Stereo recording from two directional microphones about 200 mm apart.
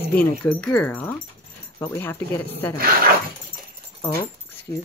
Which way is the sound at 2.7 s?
45° right (ahead or behind).